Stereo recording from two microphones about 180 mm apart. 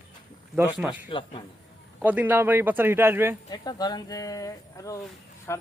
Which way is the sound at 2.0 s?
10° right (ahead or behind).